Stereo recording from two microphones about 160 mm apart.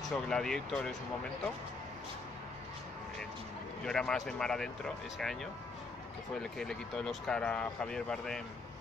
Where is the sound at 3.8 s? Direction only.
5° left (ahead or behind).